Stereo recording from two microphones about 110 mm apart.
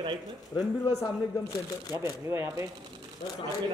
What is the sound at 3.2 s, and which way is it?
Speech, 40° left (ahead or behind).